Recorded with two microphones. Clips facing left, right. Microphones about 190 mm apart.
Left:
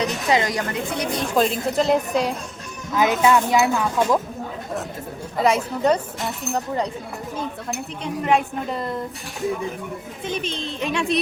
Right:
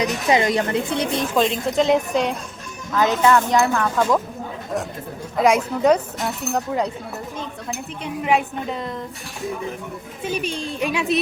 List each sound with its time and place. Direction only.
0.0 s a woman's voice: 20° right (ahead or behind)
1.4 s speech: 5° left (ahead or behind)
2.9 s speech: 15° left (ahead or behind)
5.4 s speech: 10° right (ahead or behind)
10.2 s speech: 10° right (ahead or behind)